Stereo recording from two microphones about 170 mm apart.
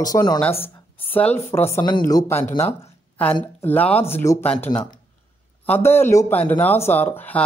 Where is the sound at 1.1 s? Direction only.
10° left (ahead or behind).